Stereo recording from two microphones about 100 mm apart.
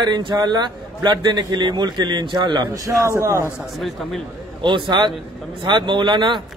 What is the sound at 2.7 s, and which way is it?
Speech, 35° right (ahead or behind).